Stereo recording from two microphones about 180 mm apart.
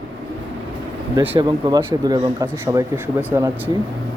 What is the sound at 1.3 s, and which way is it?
Speech, 20° right (ahead or behind).